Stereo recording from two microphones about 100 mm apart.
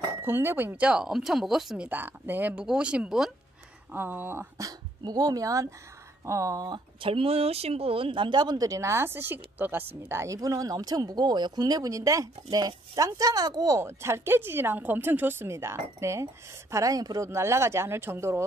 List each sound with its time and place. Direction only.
0.2 s speech: 20° right (ahead or behind); by 1.9 s 5° right (ahead or behind)
1.9 s speech: 20° right (ahead or behind)
3.9 s a woman's voice: 20° right (ahead or behind)
4.6 s speech: 40° right (ahead or behind)
7.0 s speech: 65° right (ahead or behind); by 13.7 s 40° right (ahead or behind)
13.7 s a woman's voice: 25° right (ahead or behind)